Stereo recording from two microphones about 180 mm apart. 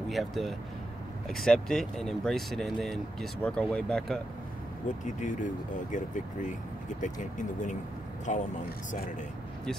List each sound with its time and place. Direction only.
0.1 s speech: centre (ahead or behind)
4.8 s speech: 45° left (ahead or behind)